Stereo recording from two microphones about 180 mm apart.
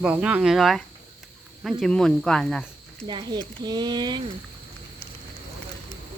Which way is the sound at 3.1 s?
25° right (ahead or behind).